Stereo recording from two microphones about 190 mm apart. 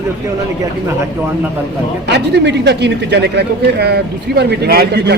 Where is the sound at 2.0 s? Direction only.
60° right (ahead or behind).